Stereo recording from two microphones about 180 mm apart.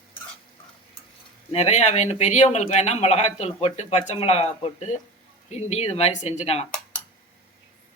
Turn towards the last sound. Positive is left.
turn(degrees=40)  # may be behind; listen again after turning